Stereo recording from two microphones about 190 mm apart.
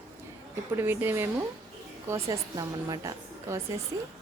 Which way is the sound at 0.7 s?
10° right (ahead or behind).